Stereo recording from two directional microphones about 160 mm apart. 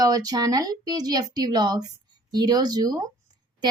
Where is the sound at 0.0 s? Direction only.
20° right (ahead or behind).